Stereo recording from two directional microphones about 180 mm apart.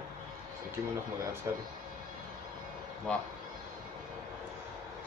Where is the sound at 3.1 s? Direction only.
5° left (ahead or behind).